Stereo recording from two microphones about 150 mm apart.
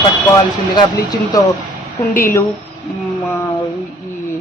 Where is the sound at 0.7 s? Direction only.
30° left (ahead or behind).